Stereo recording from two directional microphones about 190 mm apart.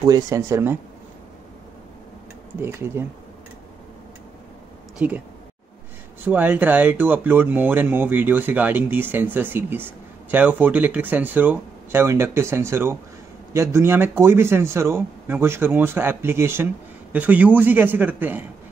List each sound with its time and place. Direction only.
0.0 s speech: 15° right (ahead or behind)
2.6 s speech: 10° right (ahead or behind)
4.9 s speech: 10° right (ahead or behind)
6.2 s speech: 10° right (ahead or behind)